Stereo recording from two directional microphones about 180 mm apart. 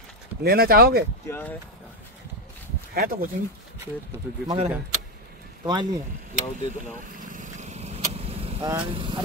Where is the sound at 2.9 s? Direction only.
55° right (ahead or behind).